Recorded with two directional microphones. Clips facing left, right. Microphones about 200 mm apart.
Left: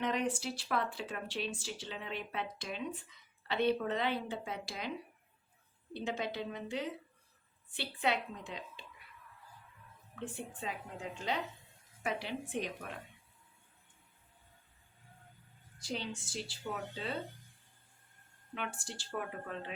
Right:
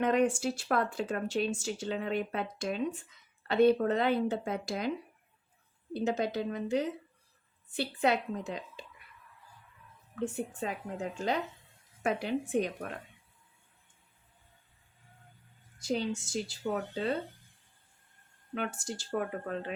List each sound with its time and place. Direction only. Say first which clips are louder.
0.0 s speech: right 7 dB; 50° right (ahead or behind)
5.9 s speech: right 7 dB; 40° right (ahead or behind)
10.2 s speech: right 9 dB; 45° right (ahead or behind)
15.8 s speech: right 8 dB; 45° right (ahead or behind)
18.5 s speech: right 7 dB; 40° right (ahead or behind)